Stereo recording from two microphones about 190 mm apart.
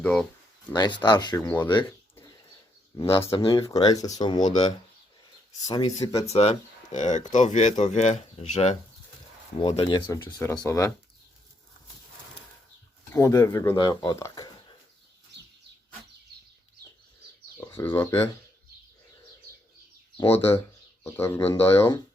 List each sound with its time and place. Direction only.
0.0 s speech: 5° left (ahead or behind)
0.7 s speech: 25° left (ahead or behind)
2.9 s speech: 20° left (ahead or behind)
5.6 s speech: 20° left (ahead or behind)
6.2 s speech: 35° left (ahead or behind)
9.6 s speech: 25° left (ahead or behind)
10.2 s speech: 5° left (ahead or behind)
13.1 s speech: 15° left (ahead or behind)
17.6 s speech: 10° left (ahead or behind)
21.0 s speech: 15° left (ahead or behind)